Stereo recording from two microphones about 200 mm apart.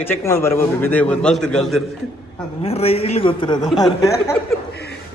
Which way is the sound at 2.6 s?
30° left (ahead or behind).